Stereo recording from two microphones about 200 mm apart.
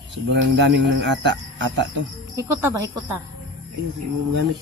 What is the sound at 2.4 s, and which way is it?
Speech, 15° right (ahead or behind).